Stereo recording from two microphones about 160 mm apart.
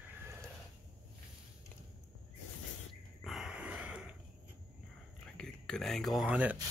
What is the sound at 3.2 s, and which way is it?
Snort, centre (ahead or behind).